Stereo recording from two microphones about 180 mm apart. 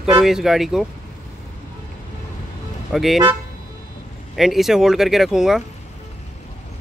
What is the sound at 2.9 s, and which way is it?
Speech, centre (ahead or behind).